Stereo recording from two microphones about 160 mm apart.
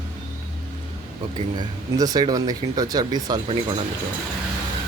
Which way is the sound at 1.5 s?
25° right (ahead or behind).